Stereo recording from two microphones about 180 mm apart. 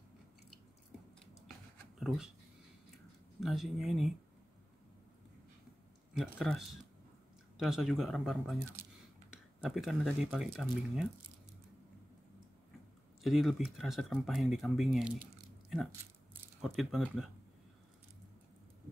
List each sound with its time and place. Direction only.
2.0 s speech: centre (ahead or behind)
3.3 s speech: centre (ahead or behind)
6.1 s speech: centre (ahead or behind)
13.2 s speech: centre (ahead or behind)
16.6 s speech: centre (ahead or behind)